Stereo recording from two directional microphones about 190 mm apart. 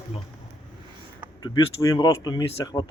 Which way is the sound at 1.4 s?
20° left (ahead or behind).